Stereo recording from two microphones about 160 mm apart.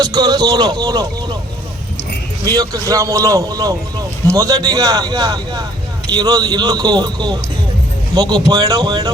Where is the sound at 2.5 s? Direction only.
25° right (ahead or behind).